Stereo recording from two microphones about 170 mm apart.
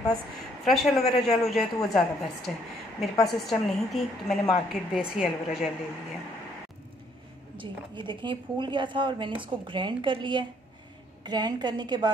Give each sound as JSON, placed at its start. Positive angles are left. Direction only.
{"t": 0.7, "sound": "a woman's voice", "side_deg": 0}
{"t": 7.5, "sound": "a woman's voice", "side_deg": -30}